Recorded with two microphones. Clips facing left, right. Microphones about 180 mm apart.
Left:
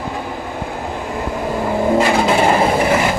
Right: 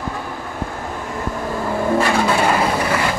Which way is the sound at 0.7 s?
15° left (ahead or behind).